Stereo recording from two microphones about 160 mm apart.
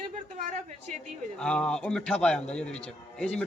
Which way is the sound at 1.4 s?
5° left (ahead or behind).